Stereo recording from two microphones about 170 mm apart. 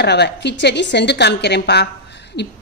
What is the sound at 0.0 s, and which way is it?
A woman's voice, 80° left.